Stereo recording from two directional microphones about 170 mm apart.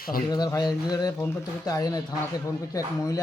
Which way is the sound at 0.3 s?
25° left (ahead or behind).